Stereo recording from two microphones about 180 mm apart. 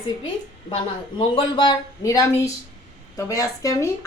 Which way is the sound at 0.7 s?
30° left (ahead or behind).